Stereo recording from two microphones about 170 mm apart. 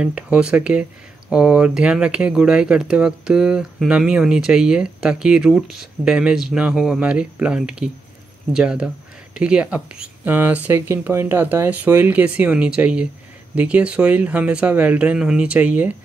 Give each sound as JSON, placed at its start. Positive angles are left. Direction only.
{"t": 0.0, "sound": "speech", "side_deg": -5}